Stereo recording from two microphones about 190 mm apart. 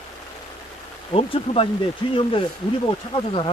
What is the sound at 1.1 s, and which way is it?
Speech, 30° left (ahead or behind).